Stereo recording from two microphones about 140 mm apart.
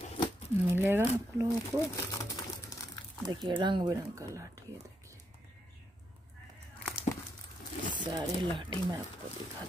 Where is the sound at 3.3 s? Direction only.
30° right (ahead or behind).